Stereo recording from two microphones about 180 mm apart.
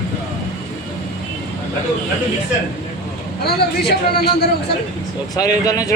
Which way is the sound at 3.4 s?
65° left (ahead or behind).